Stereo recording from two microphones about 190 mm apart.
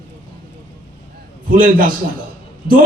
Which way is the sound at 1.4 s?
45° right (ahead or behind).